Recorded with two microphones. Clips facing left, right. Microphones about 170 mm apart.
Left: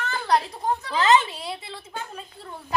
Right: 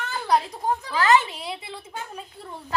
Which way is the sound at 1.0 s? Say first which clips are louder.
Even; 20° left (ahead or behind).